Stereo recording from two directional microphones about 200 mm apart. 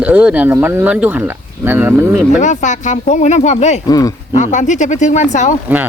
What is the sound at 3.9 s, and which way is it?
Speech, 15° left (ahead or behind).